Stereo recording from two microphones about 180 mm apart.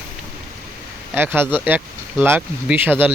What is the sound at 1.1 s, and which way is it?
Speech, 10° right (ahead or behind).